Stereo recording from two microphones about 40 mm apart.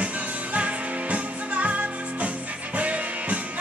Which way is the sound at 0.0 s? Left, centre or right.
Right.